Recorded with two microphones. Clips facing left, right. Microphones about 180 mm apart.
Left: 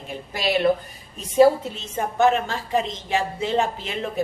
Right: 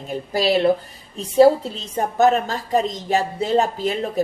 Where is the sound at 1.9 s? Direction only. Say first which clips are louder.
Right 3 dB; 40° right (ahead or behind).